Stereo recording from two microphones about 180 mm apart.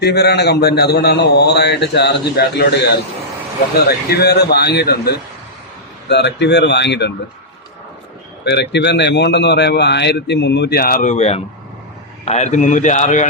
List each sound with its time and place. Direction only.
0.0 s a man's voice: 65° left (ahead or behind)
8.4 s a man's voice: 70° left (ahead or behind); by 13.2 s 40° left (ahead or behind)